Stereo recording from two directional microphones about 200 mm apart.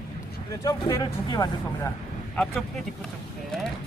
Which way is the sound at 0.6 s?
20° left (ahead or behind).